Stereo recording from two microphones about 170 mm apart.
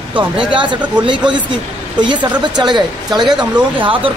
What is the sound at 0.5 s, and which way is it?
Speech, 30° right (ahead or behind).